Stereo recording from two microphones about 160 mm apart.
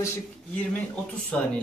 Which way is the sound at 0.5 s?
10° left (ahead or behind).